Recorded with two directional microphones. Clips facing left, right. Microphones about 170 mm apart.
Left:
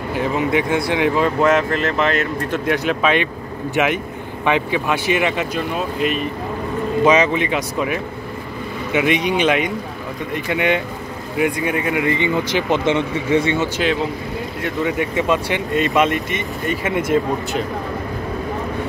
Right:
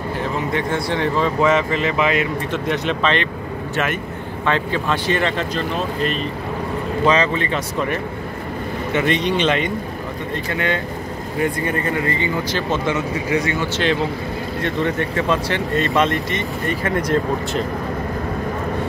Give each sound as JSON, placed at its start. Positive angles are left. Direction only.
{"t": 0.5, "sound": "speech", "side_deg": 15}
{"t": 12.9, "sound": "a man's voice", "side_deg": 25}
{"t": 14.6, "sound": "speech", "side_deg": 5}